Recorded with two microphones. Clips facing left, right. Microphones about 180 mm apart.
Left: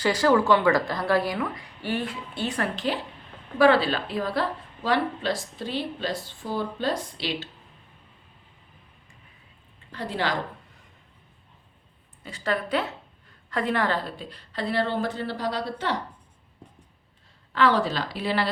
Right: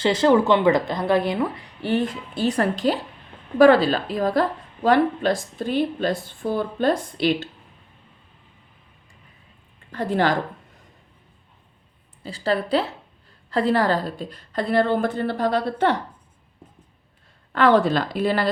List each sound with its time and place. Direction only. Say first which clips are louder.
0.0 s a woman's voice: right 4 dB; 25° right (ahead or behind); by 7.4 s 50° right (ahead or behind)
9.9 s a woman's voice: right 7 dB; 50° right (ahead or behind)
12.2 s a woman's voice: right 5 dB; 30° right (ahead or behind); by 16.0 s 55° right (ahead or behind)
17.5 s a woman's voice: right 5 dB; 55° right (ahead or behind)